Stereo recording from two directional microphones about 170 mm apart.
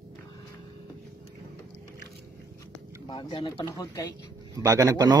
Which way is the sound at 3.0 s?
25° left (ahead or behind).